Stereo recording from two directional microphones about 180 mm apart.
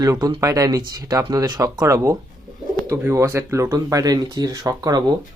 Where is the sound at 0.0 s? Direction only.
20° right (ahead or behind).